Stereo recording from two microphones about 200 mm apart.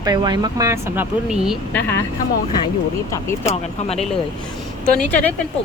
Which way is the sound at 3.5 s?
30° left (ahead or behind).